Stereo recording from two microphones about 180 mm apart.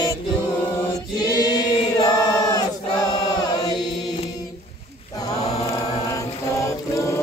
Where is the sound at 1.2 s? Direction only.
20° left (ahead or behind).